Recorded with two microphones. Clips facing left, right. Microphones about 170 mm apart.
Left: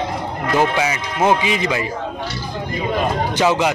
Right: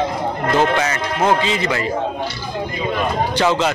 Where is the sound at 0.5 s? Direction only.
10° left (ahead or behind).